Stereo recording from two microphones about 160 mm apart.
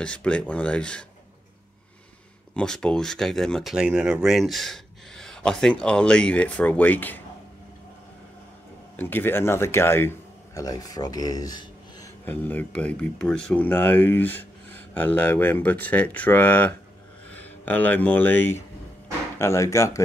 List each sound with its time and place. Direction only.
0.0 s speech: 5° left (ahead or behind)
2.5 s speech: 5° left (ahead or behind)
8.9 s speech: 10° left (ahead or behind)
12.3 s speech: 10° left (ahead or behind)